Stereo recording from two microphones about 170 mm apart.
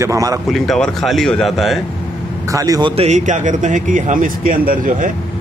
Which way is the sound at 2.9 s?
40° right (ahead or behind).